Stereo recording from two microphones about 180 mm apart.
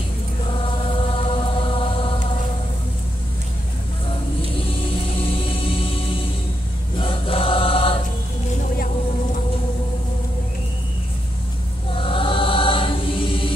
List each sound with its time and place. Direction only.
0.5 s chant: 30° left (ahead or behind)
4.6 s music: 30° left (ahead or behind)
7.0 s choir: 30° left (ahead or behind)
11.9 s choir: 30° left (ahead or behind)